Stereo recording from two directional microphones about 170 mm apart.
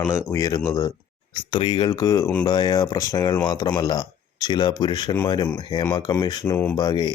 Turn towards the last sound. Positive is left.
turn(degrees=25)  # may be behind; listen again after turning